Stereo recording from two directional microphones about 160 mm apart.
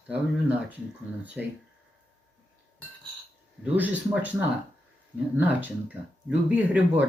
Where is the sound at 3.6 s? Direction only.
10° right (ahead or behind).